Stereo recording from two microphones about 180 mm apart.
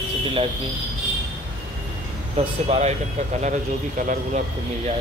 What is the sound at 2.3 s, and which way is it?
Speech, 35° right (ahead or behind).